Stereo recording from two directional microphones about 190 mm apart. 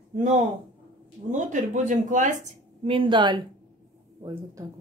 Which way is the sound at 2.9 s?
25° right (ahead or behind).